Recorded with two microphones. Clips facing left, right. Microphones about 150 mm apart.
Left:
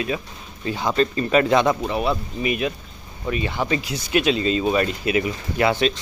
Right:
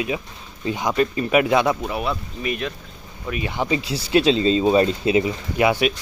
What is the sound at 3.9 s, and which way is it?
Speech, 30° right (ahead or behind).